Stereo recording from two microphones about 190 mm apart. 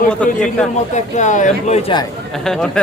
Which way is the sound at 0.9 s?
40° left (ahead or behind).